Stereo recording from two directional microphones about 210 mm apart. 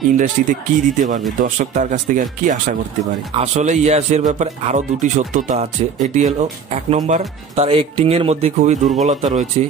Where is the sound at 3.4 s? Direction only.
35° right (ahead or behind).